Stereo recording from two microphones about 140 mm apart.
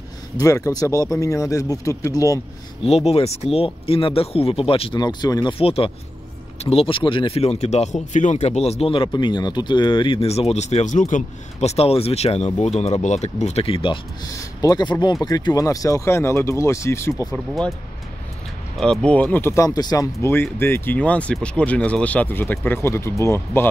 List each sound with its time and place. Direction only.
0.4 s speech: 25° left (ahead or behind)
2.8 s speech: 45° left (ahead or behind)
5.0 s speech: 30° left (ahead or behind)
14.4 s speech: 25° left (ahead or behind)
17.3 s speech: centre (ahead or behind)
18.8 s speech: 5° left (ahead or behind)